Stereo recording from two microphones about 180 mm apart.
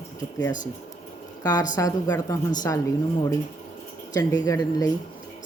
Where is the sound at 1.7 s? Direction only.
20° left (ahead or behind).